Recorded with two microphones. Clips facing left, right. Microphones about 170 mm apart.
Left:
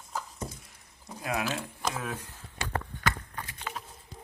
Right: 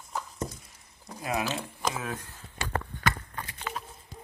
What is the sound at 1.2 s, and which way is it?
Speech, centre (ahead or behind).